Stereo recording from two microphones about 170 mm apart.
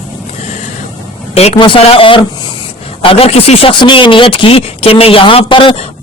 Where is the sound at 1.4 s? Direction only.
35° left (ahead or behind).